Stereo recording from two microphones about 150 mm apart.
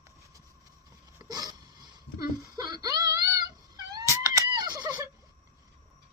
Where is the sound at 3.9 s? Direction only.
20° right (ahead or behind).